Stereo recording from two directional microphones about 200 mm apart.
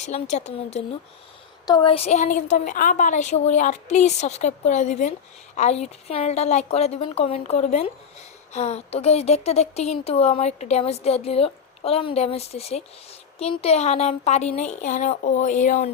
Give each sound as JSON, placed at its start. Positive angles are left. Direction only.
{"t": 0.0, "sound": "a woman's voice", "side_deg": 35}